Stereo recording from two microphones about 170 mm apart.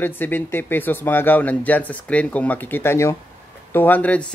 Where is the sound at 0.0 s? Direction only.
10° left (ahead or behind).